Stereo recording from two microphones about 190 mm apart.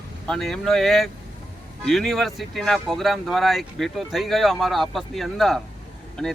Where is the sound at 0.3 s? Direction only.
Centre (ahead or behind).